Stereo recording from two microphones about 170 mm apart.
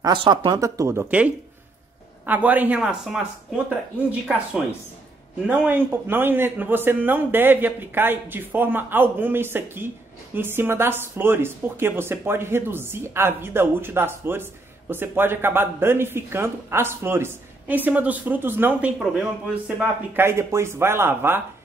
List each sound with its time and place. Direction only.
0.0 s a woman's voice: 25° right (ahead or behind); by 3.6 s 5° right (ahead or behind)
5.5 s a woman's voice: 10° right (ahead or behind)